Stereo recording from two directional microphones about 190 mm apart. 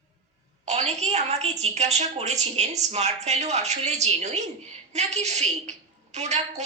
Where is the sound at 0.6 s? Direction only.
35° right (ahead or behind).